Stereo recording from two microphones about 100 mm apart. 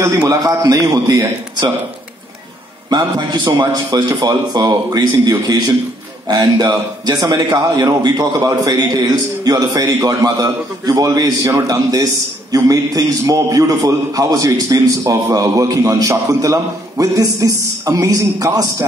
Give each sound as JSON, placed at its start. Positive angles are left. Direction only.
{"t": 0.3, "sound": "a man's voice", "side_deg": -35}
{"t": 2.9, "sound": "a man's voice", "side_deg": -50}
{"t": 11.4, "sound": "a man's voice", "side_deg": -30}